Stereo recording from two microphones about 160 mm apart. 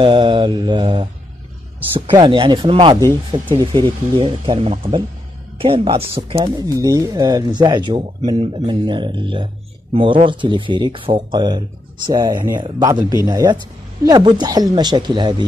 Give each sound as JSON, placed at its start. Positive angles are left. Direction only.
{"t": 0.0, "sound": "speech", "side_deg": -30}
{"t": 6.8, "sound": "speech", "side_deg": -20}